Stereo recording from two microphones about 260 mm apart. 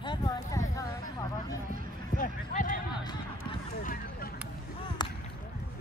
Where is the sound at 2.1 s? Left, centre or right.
Left.